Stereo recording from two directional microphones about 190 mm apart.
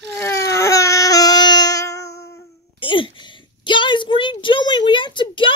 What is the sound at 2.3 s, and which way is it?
A child's voice, 25° left (ahead or behind).